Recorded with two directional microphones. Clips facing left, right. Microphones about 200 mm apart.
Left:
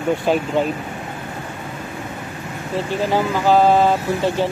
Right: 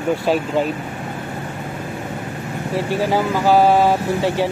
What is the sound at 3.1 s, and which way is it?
Speech, 10° right (ahead or behind).